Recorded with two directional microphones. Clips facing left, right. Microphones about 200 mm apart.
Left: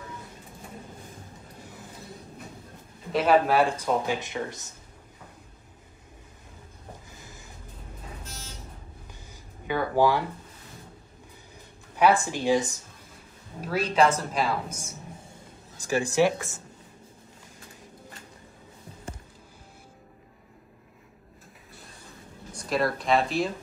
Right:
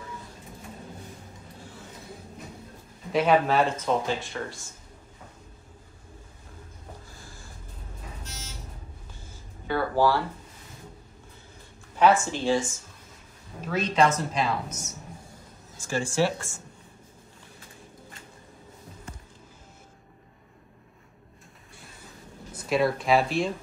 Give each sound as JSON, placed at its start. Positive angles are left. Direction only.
{"t": 3.1, "sound": "speech", "side_deg": 5}
{"t": 9.7, "sound": "speech", "side_deg": 15}
{"t": 12.0, "sound": "speech", "side_deg": 15}
{"t": 13.7, "sound": "speech", "side_deg": 5}
{"t": 22.5, "sound": "speech", "side_deg": 0}